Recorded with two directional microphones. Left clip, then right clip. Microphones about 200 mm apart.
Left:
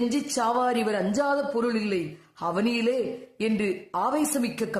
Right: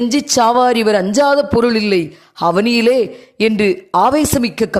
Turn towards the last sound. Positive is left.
turn(degrees=-40)  # may be behind; listen again after turning